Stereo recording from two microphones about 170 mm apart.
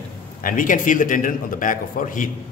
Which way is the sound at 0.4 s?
55° left (ahead or behind).